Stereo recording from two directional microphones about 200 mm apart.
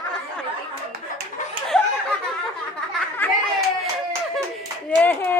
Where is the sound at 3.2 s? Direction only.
10° left (ahead or behind).